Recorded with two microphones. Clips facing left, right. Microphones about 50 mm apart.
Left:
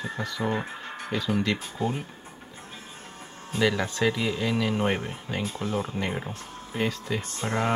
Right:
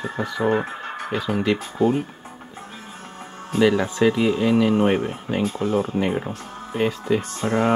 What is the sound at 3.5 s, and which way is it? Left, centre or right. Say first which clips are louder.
Speech: right 7 dB; centre.